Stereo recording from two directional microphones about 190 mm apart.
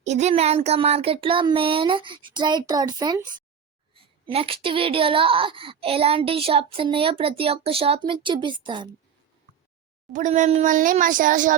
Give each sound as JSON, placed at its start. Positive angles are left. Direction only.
{"t": 0.0, "sound": "speech", "side_deg": -35}
{"t": 10.1, "sound": "speech", "side_deg": -40}